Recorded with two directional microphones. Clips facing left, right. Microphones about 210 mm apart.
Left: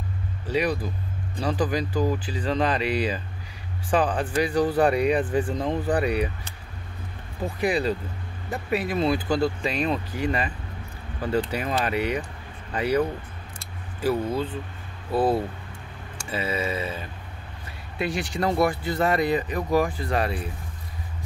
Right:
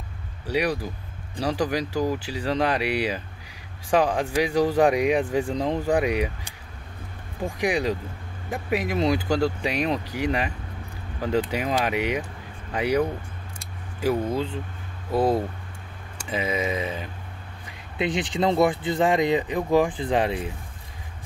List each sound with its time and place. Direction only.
0.5 s speech: 10° right (ahead or behind)
13.6 s a sound: 15° right (ahead or behind)
15.0 s speech: 15° right (ahead or behind)